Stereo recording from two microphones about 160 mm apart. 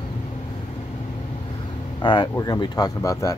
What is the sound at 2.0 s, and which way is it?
Speech, 30° left (ahead or behind).